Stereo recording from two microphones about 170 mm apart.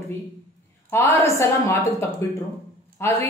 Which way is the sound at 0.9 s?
15° left (ahead or behind).